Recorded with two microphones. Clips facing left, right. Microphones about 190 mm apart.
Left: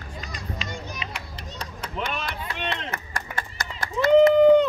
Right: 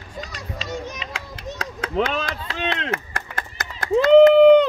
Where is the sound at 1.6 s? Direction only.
90° right.